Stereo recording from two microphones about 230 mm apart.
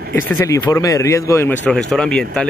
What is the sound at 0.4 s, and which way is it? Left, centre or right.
Speech, centre.